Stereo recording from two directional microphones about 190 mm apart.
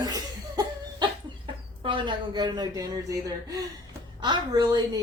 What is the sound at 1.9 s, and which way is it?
A woman's voice, 25° right (ahead or behind).